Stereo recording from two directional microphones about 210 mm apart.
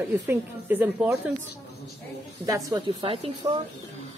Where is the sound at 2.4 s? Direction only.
15° right (ahead or behind).